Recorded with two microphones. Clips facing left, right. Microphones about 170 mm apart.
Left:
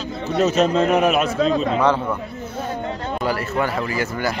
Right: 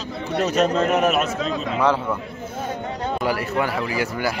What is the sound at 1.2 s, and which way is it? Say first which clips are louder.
Speech: left 5 dB; 35° left (ahead or behind).